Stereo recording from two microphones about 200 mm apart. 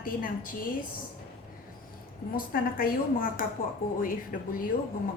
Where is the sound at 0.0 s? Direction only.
45° left (ahead or behind).